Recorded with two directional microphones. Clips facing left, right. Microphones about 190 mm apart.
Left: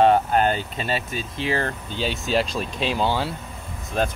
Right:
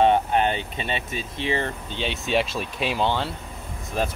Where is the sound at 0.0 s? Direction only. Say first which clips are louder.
Left 2 dB; centre (ahead or behind).